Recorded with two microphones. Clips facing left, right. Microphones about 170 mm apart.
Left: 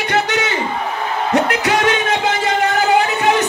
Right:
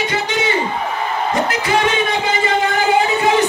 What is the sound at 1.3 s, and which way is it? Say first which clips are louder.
Music: left 3 dB; 70° left (ahead or behind).